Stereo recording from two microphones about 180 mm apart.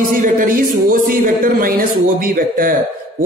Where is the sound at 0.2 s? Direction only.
50° right (ahead or behind).